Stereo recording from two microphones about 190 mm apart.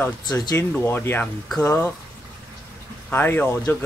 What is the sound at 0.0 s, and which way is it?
Speech, 15° left (ahead or behind).